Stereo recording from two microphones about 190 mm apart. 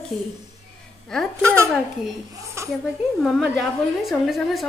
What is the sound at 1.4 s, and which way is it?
A child's voice, 15° right (ahead or behind).